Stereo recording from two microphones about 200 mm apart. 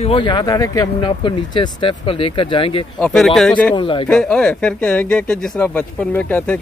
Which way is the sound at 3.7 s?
25° left (ahead or behind).